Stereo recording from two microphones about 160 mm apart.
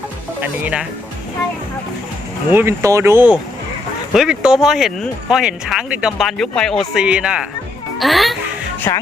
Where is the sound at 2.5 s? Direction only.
15° right (ahead or behind).